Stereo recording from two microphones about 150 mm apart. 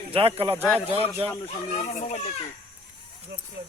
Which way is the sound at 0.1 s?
40° right (ahead or behind).